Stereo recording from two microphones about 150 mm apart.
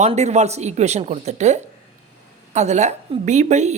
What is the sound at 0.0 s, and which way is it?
A woman's voice, 45° right (ahead or behind).